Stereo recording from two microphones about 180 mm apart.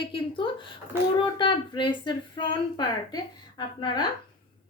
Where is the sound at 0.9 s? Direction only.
10° right (ahead or behind).